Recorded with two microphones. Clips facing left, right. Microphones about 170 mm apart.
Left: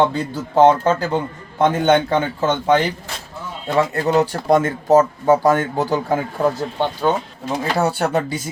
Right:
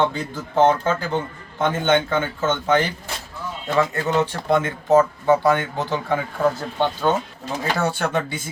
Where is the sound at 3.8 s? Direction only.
35° left (ahead or behind).